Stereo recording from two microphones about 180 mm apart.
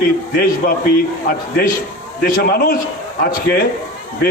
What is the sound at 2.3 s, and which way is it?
A man's voice, 55° left (ahead or behind).